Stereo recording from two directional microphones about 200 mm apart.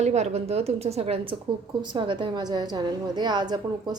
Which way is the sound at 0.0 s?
35° right (ahead or behind).